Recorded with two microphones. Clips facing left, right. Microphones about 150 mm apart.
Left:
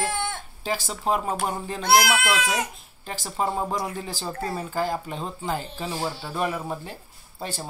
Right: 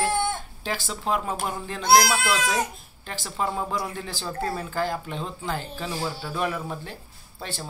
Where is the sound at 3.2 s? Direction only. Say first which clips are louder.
Left 2 dB; 40° left (ahead or behind).